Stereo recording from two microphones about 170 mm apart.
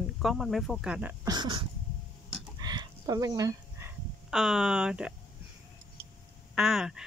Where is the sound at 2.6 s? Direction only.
25° right (ahead or behind).